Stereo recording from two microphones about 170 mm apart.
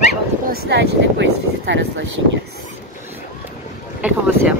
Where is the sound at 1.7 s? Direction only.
90° right.